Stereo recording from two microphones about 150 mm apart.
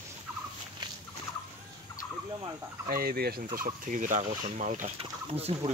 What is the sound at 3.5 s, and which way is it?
Fowl, 60° right (ahead or behind).